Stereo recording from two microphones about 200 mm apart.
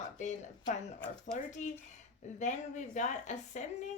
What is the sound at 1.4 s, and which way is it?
Speech, 40° left (ahead or behind).